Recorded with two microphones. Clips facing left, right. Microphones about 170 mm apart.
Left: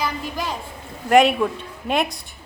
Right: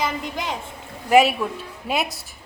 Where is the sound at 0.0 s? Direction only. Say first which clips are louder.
Even; 20° right (ahead or behind).